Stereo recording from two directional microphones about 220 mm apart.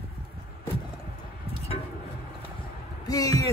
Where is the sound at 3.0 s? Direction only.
15° left (ahead or behind).